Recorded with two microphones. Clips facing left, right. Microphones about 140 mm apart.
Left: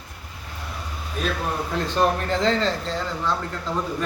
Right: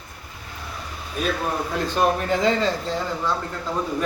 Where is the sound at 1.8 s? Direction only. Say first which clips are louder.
Even; 5° right (ahead or behind).